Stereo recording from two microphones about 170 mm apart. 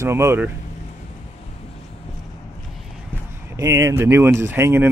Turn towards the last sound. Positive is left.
turn(degrees=-15)  # may be behind; listen again after turning